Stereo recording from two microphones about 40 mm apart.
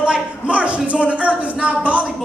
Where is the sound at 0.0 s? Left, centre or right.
Right.